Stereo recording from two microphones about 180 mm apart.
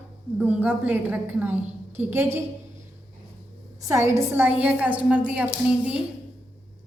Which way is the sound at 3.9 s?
15° right (ahead or behind).